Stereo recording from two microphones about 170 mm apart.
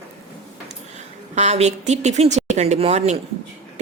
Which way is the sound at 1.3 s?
40° right (ahead or behind).